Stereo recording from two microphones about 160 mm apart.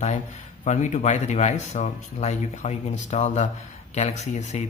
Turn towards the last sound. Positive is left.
turn(degrees=45)  # may be behind; listen again after turning